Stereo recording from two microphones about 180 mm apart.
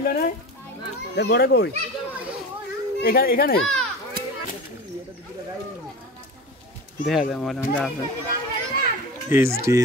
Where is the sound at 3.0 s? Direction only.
55° left (ahead or behind).